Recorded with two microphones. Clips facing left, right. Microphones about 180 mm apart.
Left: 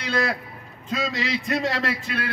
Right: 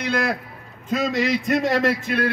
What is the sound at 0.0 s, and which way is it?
A man's voice, 50° right (ahead or behind).